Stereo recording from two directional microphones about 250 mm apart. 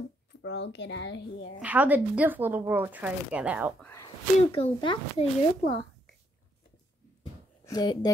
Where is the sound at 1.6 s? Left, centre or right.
Centre.